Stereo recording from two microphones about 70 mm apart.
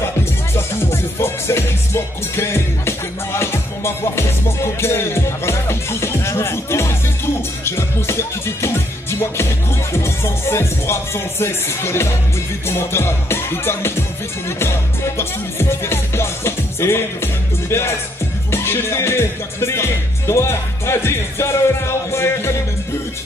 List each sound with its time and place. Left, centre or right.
0.6 s music: left